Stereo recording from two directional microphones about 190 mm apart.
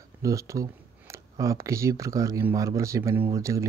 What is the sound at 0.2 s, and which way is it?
Speech, 15° right (ahead or behind).